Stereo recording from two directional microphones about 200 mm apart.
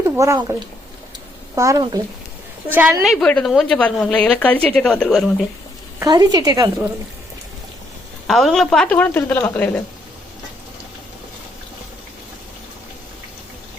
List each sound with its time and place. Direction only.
0.2 s speech: 15° right (ahead or behind)
1.5 s a woman's voice: 15° right (ahead or behind); by 5.5 s centre (ahead or behind)
6.0 s speech: 20° right (ahead or behind)
8.3 s a woman's voice: centre (ahead or behind)